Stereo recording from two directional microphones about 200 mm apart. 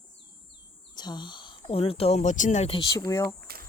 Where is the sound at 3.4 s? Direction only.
50° right (ahead or behind).